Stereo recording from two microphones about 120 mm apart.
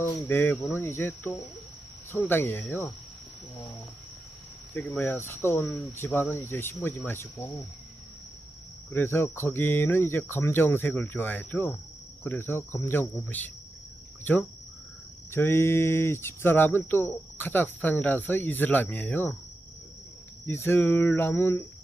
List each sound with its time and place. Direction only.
0.0 s speech: 20° left (ahead or behind)
4.9 s speech: 20° left (ahead or behind)
8.9 s speech: 20° left (ahead or behind)
20.5 s speech: 20° left (ahead or behind)